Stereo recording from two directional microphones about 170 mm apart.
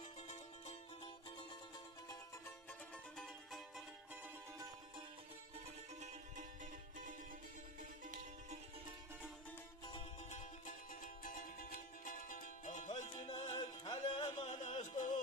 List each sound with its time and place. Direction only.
0.2 s music: 40° left (ahead or behind)
2.9 s music: 5° left (ahead or behind)
4.5 s music: 20° right (ahead or behind)
7.8 s music: 50° right (ahead or behind)
10.2 s music: 45° left (ahead or behind)